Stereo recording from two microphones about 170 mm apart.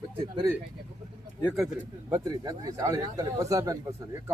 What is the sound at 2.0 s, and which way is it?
Speech, 20° right (ahead or behind).